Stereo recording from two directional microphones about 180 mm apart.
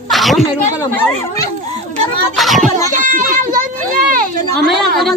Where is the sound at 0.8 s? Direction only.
15° left (ahead or behind).